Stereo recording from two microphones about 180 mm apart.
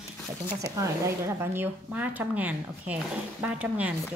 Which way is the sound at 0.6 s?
15° right (ahead or behind).